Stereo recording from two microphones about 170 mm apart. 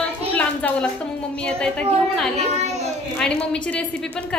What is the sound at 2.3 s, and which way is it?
Speech, 40° right (ahead or behind).